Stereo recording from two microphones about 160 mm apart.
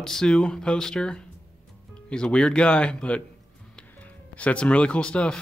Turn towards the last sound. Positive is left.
turn(degrees=5)  # may be behind; listen again after turning